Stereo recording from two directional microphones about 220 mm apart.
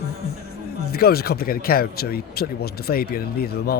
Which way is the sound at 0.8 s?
45° left (ahead or behind).